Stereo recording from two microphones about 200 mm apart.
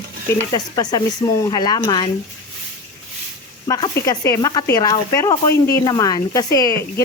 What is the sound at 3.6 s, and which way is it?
Speech, 20° left (ahead or behind).